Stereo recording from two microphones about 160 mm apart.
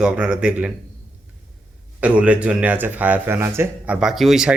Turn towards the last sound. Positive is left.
turn(degrees=0)  # may be behind; listen again after turning